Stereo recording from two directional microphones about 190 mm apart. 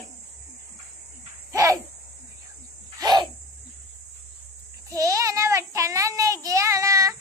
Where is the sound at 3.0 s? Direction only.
20° right (ahead or behind).